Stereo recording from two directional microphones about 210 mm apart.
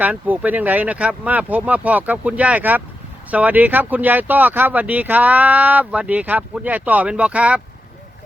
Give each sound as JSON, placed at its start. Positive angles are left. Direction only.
{"t": 0.0, "sound": "speech", "side_deg": -10}